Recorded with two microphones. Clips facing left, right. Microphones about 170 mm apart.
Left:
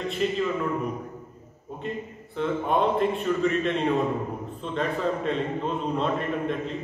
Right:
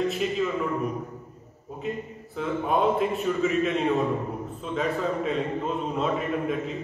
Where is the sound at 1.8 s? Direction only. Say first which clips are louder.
Right 1 dB; centre (ahead or behind).